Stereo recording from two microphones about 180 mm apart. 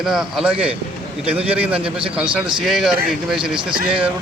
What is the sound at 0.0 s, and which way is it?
Speech, centre (ahead or behind).